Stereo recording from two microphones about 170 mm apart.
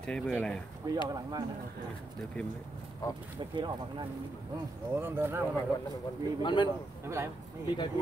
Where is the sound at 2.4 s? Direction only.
10° left (ahead or behind).